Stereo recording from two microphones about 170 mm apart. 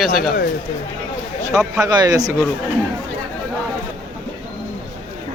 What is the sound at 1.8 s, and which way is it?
Speech, 20° right (ahead or behind).